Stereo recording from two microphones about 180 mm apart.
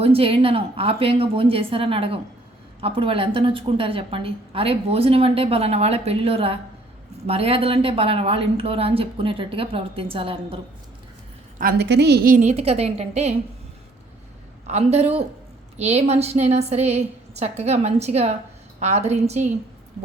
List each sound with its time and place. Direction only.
0.0 s a woman's voice: 30° right (ahead or behind)
11.5 s a woman's voice: 60° right (ahead or behind); by 13.3 s 35° right (ahead or behind)
14.7 s a woman's voice: 35° right (ahead or behind)